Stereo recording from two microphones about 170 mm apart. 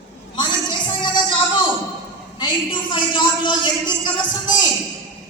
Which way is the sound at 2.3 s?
30° left (ahead or behind).